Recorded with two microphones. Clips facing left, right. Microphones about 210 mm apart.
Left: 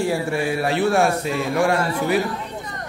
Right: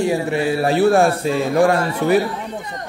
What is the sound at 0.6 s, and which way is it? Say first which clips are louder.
A man's voice: right 5 dB; 35° right (ahead or behind).